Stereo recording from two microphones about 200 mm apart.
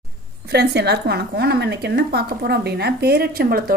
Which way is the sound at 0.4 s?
55° right (ahead or behind).